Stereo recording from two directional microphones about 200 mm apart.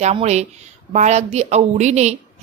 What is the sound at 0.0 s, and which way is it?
A woman's voice, 35° right (ahead or behind).